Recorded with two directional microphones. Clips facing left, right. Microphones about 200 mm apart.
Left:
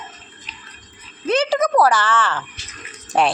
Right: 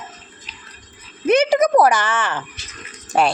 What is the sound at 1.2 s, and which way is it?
A woman's voice, 15° right (ahead or behind).